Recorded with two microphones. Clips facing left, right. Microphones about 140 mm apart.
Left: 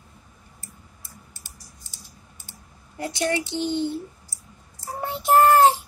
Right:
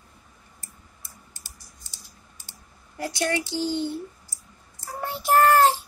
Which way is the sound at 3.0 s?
20° left (ahead or behind).